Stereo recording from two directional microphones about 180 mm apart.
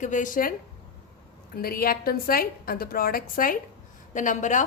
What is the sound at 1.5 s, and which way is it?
A woman's voice, 55° left (ahead or behind).